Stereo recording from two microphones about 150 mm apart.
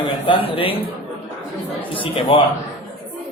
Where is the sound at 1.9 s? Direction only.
35° left (ahead or behind).